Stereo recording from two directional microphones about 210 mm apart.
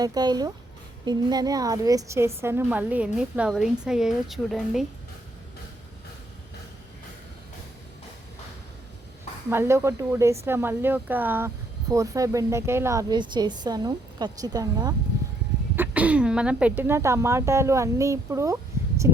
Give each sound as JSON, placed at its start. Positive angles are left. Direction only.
{"t": 0.0, "sound": "speech", "side_deg": -20}
{"t": 9.5, "sound": "speech", "side_deg": -10}